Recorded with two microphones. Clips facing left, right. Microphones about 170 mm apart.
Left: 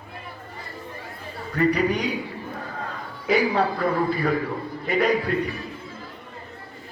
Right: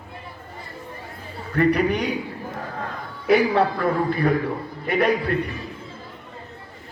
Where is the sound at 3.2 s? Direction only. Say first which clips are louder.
Right 3 dB; 60° right (ahead or behind).